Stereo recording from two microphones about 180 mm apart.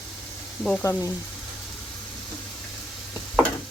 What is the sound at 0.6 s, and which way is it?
Speech, 5° left (ahead or behind).